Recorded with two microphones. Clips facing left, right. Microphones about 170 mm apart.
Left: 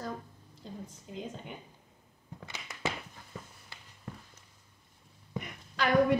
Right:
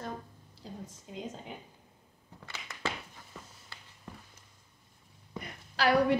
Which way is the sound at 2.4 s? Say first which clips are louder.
Left 1 dB; 15° left (ahead or behind).